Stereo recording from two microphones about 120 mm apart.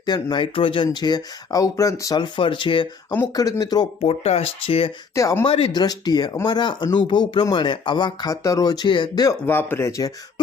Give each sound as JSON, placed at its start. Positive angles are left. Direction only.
{"t": 0.0, "sound": "speech", "side_deg": 35}
{"t": 3.3, "sound": "speech", "side_deg": 30}
{"t": 4.0, "sound": "speech", "side_deg": 55}
{"t": 5.1, "sound": "speech", "side_deg": 25}
{"t": 5.5, "sound": "speech", "side_deg": 50}
{"t": 5.7, "sound": "speech", "side_deg": 35}
{"t": 9.5, "sound": "speech", "side_deg": 15}